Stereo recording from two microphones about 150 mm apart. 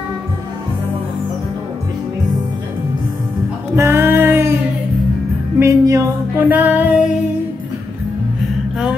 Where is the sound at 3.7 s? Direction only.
15° right (ahead or behind).